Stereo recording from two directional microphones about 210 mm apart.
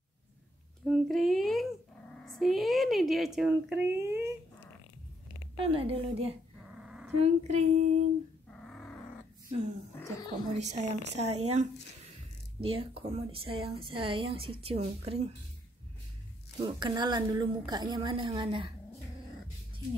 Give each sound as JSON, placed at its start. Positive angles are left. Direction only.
{"t": 0.8, "sound": "a woman's voice", "side_deg": 0}
{"t": 5.6, "sound": "a woman's voice", "side_deg": -25}
{"t": 6.8, "sound": "dog", "side_deg": -5}
{"t": 7.2, "sound": "child singing", "side_deg": -30}
{"t": 8.5, "sound": "dog", "side_deg": 5}
{"t": 9.9, "sound": "speech", "side_deg": 15}
{"t": 10.5, "sound": "child singing", "side_deg": -35}
{"t": 12.5, "sound": "a woman's voice", "side_deg": -25}
{"t": 16.6, "sound": "a woman's voice", "side_deg": -20}